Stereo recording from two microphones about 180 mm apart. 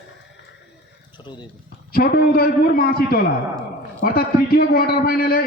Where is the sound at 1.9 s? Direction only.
55° left (ahead or behind).